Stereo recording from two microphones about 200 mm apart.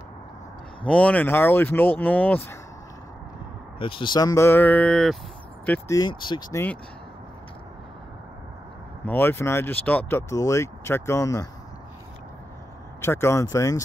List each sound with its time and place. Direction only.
0.8 s speech: 5° left (ahead or behind)
3.8 s speech: 25° left (ahead or behind); by 5.1 s 5° left (ahead or behind)
5.7 s speech: 15° left (ahead or behind)
9.0 s speech: 10° left (ahead or behind)
13.0 s speech: 10° left (ahead or behind)